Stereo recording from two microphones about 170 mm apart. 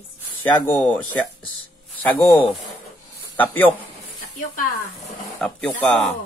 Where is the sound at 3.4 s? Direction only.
10° left (ahead or behind).